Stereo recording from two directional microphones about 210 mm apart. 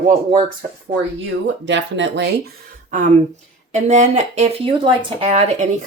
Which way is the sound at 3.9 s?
35° right (ahead or behind).